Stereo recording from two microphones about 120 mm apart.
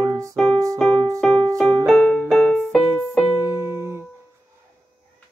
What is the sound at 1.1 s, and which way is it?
Music, 5° left (ahead or behind).